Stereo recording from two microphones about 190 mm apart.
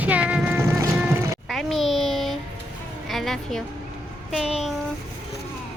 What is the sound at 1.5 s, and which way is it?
A child's voice, centre (ahead or behind).